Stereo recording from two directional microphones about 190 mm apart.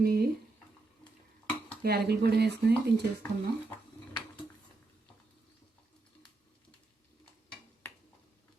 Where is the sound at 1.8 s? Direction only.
55° right (ahead or behind).